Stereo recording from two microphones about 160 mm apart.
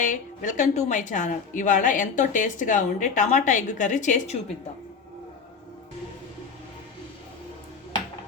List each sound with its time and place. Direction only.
0.0 s a woman's voice: 50° left (ahead or behind)